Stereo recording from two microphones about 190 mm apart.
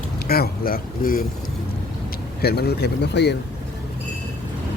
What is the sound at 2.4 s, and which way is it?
Speech, 60° left (ahead or behind).